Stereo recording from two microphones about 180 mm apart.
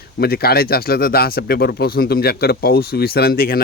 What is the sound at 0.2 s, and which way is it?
Speech, 60° left (ahead or behind).